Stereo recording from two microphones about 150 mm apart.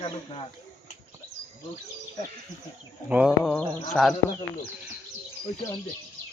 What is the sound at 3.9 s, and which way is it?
Speech, 10° left (ahead or behind).